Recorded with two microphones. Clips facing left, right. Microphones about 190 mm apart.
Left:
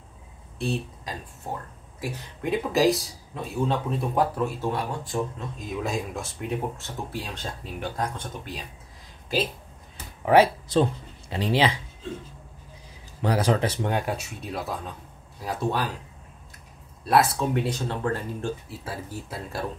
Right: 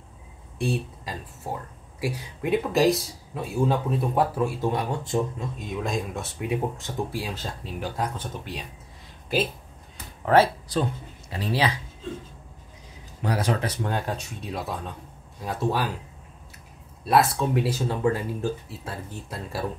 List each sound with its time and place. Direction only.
1.0 s speech: 10° right (ahead or behind)
5.6 s speech: centre (ahead or behind)
10.2 s a man's voice: 15° left (ahead or behind)
13.2 s speech: 30° left (ahead or behind)
13.8 s speech: 10° left (ahead or behind)
17.0 s speech: centre (ahead or behind)
18.7 s speech: 5° left (ahead or behind)